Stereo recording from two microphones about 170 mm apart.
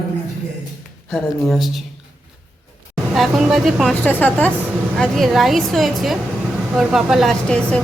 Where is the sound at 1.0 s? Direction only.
Centre (ahead or behind).